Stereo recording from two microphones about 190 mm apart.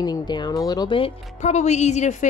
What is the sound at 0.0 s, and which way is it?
Speech, 20° left (ahead or behind).